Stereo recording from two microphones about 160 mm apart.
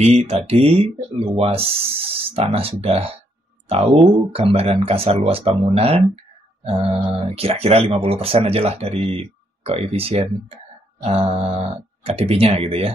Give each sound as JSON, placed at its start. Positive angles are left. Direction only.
{"t": 0.0, "sound": "speech", "side_deg": -40}